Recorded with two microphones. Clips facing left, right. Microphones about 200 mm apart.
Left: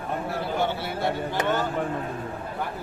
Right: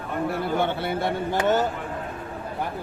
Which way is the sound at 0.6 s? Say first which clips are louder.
Right 1 dB; 55° right (ahead or behind).